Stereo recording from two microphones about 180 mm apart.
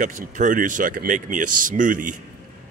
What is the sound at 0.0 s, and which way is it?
A man's voice, 45° right (ahead or behind).